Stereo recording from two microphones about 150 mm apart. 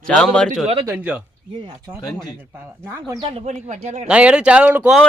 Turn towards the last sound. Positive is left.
turn(degrees=-5)  # may be behind; listen again after turning